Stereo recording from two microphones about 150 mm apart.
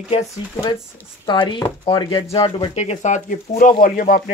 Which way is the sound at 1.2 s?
30° left (ahead or behind).